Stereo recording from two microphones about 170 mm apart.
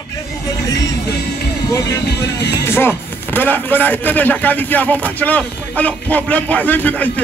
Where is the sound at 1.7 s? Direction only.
20° left (ahead or behind).